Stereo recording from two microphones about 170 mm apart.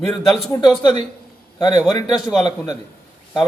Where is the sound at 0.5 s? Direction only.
25° left (ahead or behind).